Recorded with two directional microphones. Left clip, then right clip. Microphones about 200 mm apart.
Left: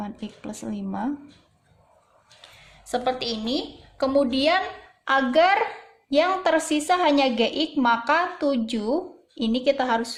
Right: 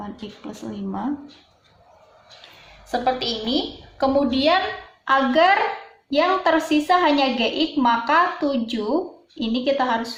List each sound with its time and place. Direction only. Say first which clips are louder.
0.0 s a woman's voice: right 1 dB; 55° left (ahead or behind)
2.9 s a woman's voice: right 3 dB; 45° left (ahead or behind)